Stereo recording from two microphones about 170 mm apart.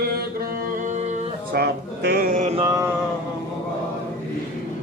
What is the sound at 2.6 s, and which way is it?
Mantra, 20° right (ahead or behind).